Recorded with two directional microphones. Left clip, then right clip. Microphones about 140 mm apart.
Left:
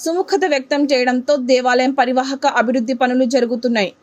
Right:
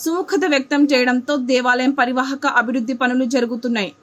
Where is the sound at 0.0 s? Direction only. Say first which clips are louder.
Left 2 dB; 20° left (ahead or behind).